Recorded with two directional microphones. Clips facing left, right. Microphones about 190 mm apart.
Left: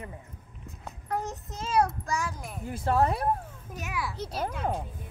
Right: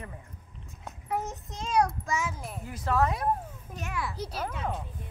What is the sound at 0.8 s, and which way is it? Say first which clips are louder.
Speech: even; centre (ahead or behind).